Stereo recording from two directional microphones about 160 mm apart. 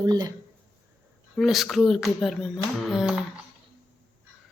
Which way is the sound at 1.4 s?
Centre (ahead or behind).